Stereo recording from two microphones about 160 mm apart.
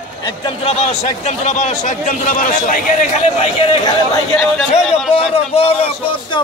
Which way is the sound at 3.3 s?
35° left (ahead or behind).